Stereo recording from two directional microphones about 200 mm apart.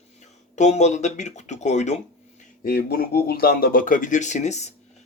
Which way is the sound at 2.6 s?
50° left (ahead or behind).